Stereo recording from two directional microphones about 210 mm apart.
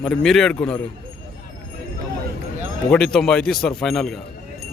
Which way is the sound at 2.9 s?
Centre (ahead or behind).